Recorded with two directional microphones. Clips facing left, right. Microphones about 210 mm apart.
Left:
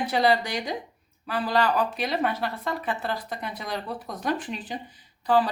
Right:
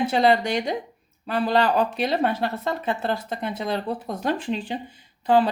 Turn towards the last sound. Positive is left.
turn(degrees=-25)  # may be behind; listen again after turning